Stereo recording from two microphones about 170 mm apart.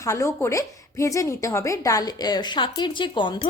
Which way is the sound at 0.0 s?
15° left (ahead or behind).